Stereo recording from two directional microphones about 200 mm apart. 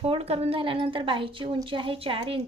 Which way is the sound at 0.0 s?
30° right (ahead or behind).